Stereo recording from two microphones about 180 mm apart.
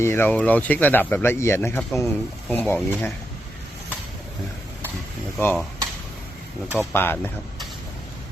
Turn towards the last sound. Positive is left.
turn(degrees=10)  # may be behind; listen again after turning